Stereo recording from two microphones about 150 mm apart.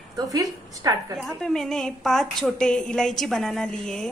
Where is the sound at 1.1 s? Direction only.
5° left (ahead or behind).